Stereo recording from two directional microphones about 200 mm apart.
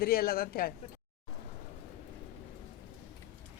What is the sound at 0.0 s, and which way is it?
Speech, 50° left (ahead or behind).